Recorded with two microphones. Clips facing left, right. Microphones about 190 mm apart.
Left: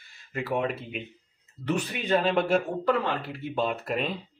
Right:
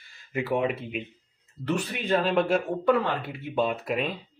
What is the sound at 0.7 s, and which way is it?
Speech, centre (ahead or behind).